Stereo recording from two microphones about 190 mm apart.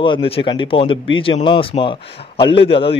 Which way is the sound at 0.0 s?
25° left (ahead or behind).